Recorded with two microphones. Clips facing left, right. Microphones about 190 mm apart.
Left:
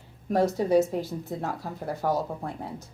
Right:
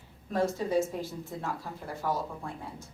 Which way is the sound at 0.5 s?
70° left (ahead or behind).